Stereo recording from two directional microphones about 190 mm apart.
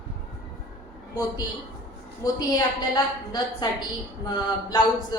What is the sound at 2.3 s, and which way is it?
Speech, 20° left (ahead or behind).